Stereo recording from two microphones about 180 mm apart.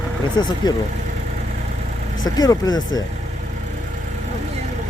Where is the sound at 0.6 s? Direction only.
20° left (ahead or behind).